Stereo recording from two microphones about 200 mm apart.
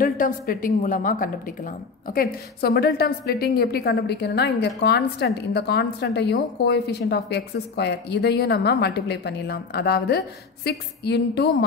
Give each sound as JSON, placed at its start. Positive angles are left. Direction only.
{"t": 0.0, "sound": "a woman's voice", "side_deg": 45}